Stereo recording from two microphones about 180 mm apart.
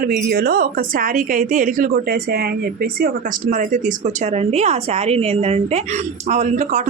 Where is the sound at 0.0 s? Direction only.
55° right (ahead or behind).